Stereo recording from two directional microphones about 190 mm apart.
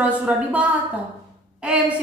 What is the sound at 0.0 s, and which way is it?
A woman's voice, 5° right (ahead or behind).